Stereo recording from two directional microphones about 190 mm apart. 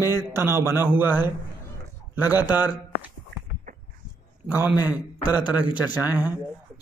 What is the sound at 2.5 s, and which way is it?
Speech, 10° right (ahead or behind).